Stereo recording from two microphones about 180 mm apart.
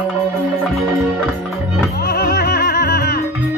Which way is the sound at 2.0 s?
60° left (ahead or behind).